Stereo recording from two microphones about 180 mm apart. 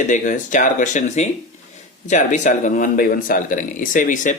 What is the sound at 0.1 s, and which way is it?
Speech, 45° left (ahead or behind).